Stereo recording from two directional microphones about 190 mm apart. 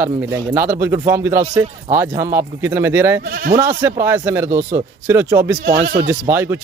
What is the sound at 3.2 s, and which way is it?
Speech, 55° right (ahead or behind).